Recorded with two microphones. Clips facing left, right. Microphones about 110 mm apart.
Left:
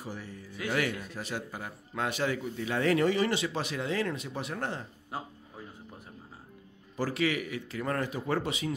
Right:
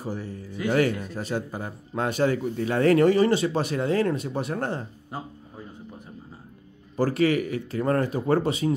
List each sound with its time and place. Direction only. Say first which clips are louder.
0.0 s music: right 8 dB; 35° right (ahead or behind)
0.7 s a man's voice: right 8 dB; 35° right (ahead or behind)
7.0 s a man's voice: right 8 dB; 45° right (ahead or behind)